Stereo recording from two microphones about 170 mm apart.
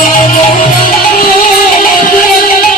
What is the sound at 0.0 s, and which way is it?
Music, 50° left (ahead or behind).